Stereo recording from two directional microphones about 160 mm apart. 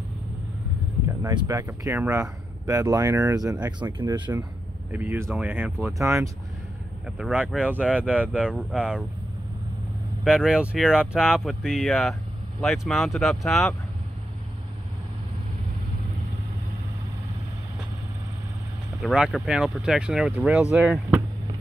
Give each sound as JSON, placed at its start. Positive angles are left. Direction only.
{"t": 1.2, "sound": "speech", "side_deg": -25}
{"t": 4.9, "sound": "speech", "side_deg": -15}
{"t": 7.1, "sound": "speech", "side_deg": -5}
{"t": 10.2, "sound": "speech", "side_deg": -5}
{"t": 18.9, "sound": "speech", "side_deg": 0}